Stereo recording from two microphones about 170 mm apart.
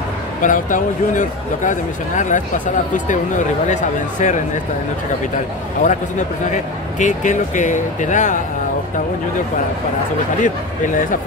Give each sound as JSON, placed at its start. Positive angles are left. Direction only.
{"t": 0.4, "sound": "speech", "side_deg": 50}
{"t": 5.8, "sound": "speech", "side_deg": 45}
{"t": 7.0, "sound": "speech", "side_deg": 45}